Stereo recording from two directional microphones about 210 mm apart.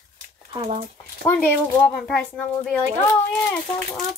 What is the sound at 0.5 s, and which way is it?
Speech, 30° right (ahead or behind).